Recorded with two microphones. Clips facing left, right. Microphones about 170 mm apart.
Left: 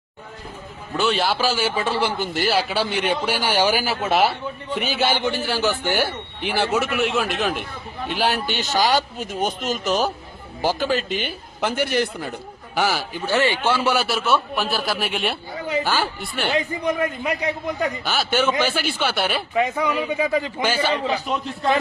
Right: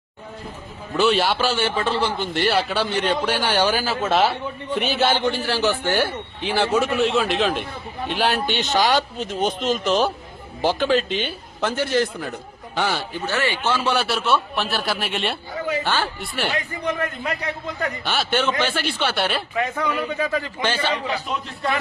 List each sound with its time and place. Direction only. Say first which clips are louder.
0.9 s a man's voice: right 2 dB; centre (ahead or behind)
4.7 s a man's voice: right 2 dB; centre (ahead or behind)
11.1 s speech: right 1 dB; 50° left (ahead or behind)
11.6 s a man's voice: right 1 dB; 15° left (ahead or behind)
12.7 s speech: left 1 dB; 5° left (ahead or behind)
13.3 s a man's voice: left 3 dB; 15° left (ahead or behind); by 16.5 s centre (ahead or behind)
16.6 s a man's voice: left 3 dB; 10° left (ahead or behind)
18.0 s speech: even; centre (ahead or behind)
19.5 s a man's voice: left 4 dB; 15° left (ahead or behind)